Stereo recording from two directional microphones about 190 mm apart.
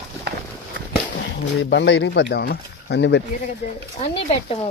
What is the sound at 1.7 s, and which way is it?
Speech, 65° left (ahead or behind).